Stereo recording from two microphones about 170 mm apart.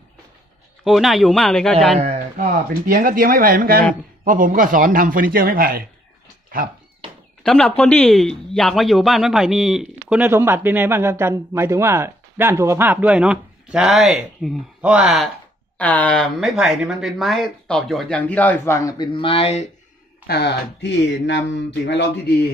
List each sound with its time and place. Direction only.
0.8 s speech: centre (ahead or behind)
2.0 s speech: 40° right (ahead or behind)
2.3 s a man's voice: 60° right (ahead or behind)
7.4 s speech: 5° left (ahead or behind)
19.1 s speech: 35° left (ahead or behind)
20.2 s speech: 80° left